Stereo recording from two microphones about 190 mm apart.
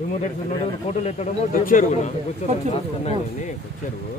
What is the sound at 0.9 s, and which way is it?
A man's voice, 35° left (ahead or behind).